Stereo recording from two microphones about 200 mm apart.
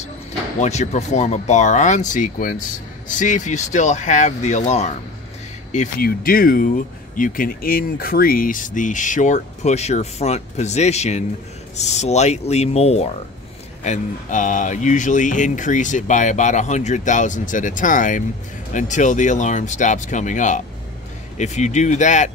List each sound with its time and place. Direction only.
0.6 s speech: 35° left (ahead or behind)